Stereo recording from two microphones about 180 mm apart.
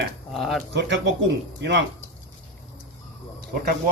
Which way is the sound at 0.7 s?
85° right.